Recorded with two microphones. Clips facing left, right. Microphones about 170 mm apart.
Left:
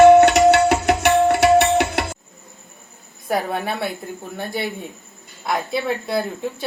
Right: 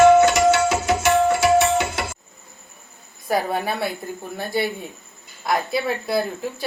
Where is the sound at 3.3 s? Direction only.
5° right (ahead or behind).